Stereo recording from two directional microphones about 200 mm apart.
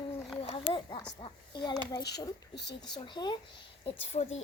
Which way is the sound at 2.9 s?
20° left (ahead or behind).